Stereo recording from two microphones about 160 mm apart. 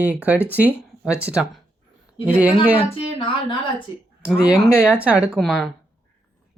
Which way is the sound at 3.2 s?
30° left (ahead or behind).